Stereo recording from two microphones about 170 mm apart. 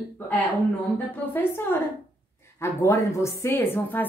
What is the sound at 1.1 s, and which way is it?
A woman's voice, 10° left (ahead or behind).